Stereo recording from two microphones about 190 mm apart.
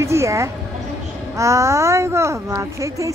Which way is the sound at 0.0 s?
15° right (ahead or behind).